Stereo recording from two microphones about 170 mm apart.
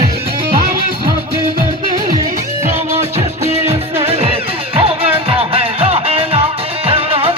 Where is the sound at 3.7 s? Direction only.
35° right (ahead or behind).